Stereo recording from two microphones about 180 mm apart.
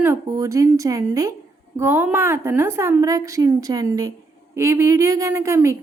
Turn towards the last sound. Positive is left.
turn(degrees=-15)  # may be behind; listen again after turning